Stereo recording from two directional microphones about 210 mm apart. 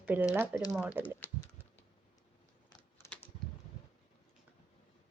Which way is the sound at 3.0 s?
15° left (ahead or behind).